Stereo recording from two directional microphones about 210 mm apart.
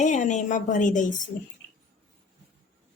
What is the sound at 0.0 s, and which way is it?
A woman's voice, 35° left (ahead or behind).